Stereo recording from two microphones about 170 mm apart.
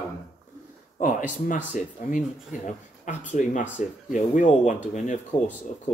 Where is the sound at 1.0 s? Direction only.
50° left (ahead or behind).